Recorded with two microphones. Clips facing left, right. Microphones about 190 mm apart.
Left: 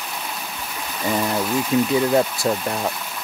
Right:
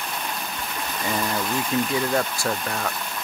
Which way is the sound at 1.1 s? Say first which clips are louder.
Left 5 dB; 10° left (ahead or behind).